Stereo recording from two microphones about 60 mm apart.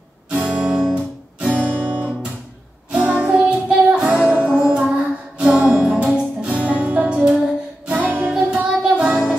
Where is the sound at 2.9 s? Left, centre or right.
Right.